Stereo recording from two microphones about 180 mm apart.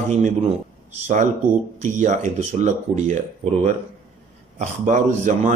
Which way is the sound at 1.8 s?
45° right (ahead or behind).